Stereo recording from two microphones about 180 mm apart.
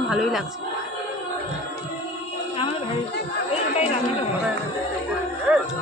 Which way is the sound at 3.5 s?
35° left (ahead or behind).